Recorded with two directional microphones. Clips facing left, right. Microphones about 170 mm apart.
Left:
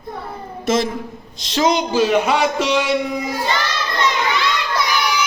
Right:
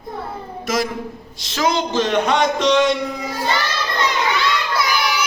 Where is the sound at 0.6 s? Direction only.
25° left (ahead or behind).